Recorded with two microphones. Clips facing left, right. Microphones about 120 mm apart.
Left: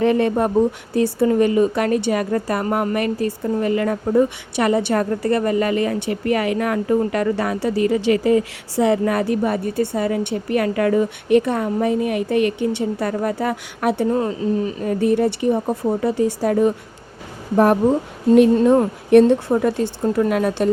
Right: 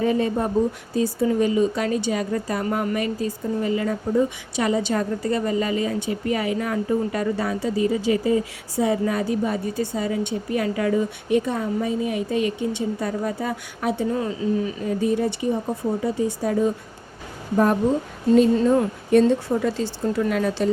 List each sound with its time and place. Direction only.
0.0 s a woman's voice: 70° left (ahead or behind)
14.2 s speech: 40° left (ahead or behind)
15.0 s a woman's voice: 65° left (ahead or behind)